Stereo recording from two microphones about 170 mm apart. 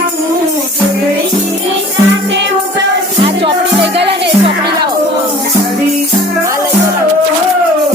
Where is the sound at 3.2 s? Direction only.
30° right (ahead or behind).